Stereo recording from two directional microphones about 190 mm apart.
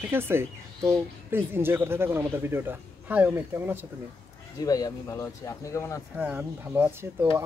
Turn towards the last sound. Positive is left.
turn(degrees=-10)  # may be behind; listen again after turning